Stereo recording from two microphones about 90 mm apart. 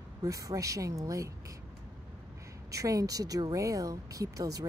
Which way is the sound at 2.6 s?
40° right (ahead or behind).